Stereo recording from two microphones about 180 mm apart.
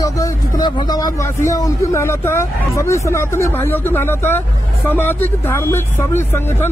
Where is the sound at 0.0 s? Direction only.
20° left (ahead or behind).